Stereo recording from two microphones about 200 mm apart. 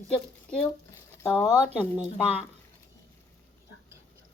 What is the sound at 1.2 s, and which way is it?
Speech, 20° left (ahead or behind).